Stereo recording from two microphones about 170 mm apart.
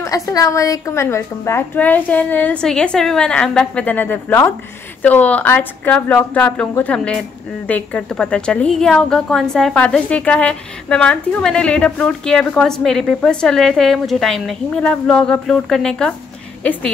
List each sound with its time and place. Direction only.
0.0 s a woman's voice: 20° left (ahead or behind); by 16.2 s 5° left (ahead or behind)